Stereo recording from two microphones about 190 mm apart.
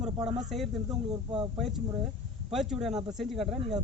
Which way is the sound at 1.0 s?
25° right (ahead or behind).